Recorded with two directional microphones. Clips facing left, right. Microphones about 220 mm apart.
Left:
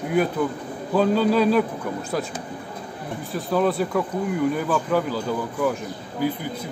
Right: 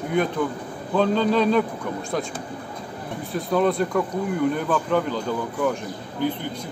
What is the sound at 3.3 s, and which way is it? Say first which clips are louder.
Speech: right 1 dB; centre (ahead or behind).